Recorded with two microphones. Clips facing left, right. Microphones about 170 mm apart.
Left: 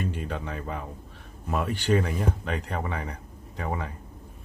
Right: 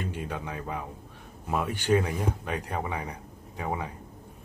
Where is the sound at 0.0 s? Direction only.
10° right (ahead or behind).